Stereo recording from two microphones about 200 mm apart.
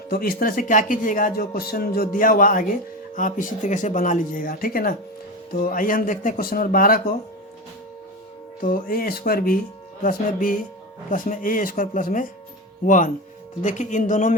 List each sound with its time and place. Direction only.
0.1 s speech: 50° left (ahead or behind)
8.6 s speech: 45° left (ahead or behind)